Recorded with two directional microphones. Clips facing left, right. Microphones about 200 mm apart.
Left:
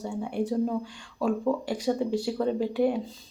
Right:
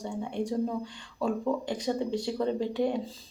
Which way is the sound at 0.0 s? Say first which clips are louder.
Left 3 dB; 5° left (ahead or behind).